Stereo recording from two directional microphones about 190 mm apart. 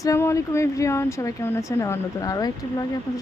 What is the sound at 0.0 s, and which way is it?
Speech, 15° left (ahead or behind).